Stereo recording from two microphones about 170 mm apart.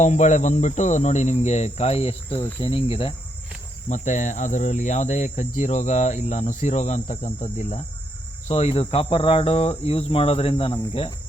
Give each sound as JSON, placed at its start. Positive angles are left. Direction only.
{"t": 0.0, "sound": "cricket", "side_deg": 45}
{"t": 3.8, "sound": "cricket", "side_deg": 45}
{"t": 8.4, "sound": "cricket", "side_deg": 40}